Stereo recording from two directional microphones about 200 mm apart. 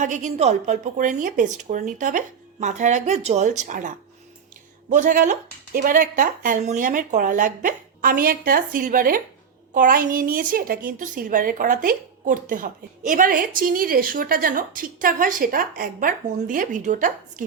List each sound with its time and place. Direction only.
0.0 s a woman's voice: 40° right (ahead or behind)